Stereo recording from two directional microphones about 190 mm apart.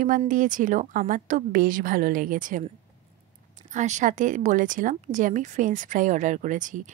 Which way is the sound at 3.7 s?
40° right (ahead or behind).